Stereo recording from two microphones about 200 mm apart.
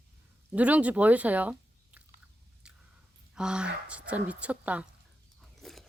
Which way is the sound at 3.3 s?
5° right (ahead or behind).